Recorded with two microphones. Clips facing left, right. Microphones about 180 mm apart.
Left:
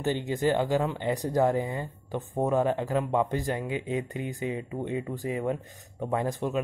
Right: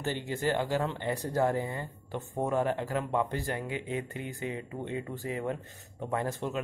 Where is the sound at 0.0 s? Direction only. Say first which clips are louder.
Left 5 dB; 20° left (ahead or behind).